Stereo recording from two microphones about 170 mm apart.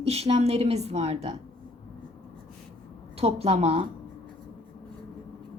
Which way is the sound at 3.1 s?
35° right (ahead or behind).